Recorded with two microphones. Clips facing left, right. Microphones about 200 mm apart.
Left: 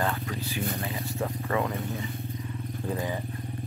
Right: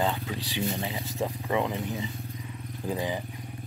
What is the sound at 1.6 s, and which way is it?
Speech, centre (ahead or behind).